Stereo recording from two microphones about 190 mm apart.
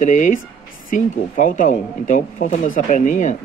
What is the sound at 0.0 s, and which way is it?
Speech, 40° left (ahead or behind).